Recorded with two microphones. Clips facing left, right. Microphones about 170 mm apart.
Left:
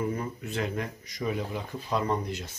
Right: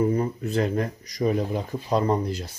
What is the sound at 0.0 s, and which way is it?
Speech, 35° right (ahead or behind).